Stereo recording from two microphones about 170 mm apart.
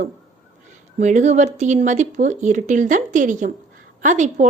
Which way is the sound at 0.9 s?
45° right (ahead or behind).